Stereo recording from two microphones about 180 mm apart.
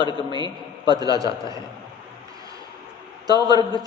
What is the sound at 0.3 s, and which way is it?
A woman's voice, 25° right (ahead or behind).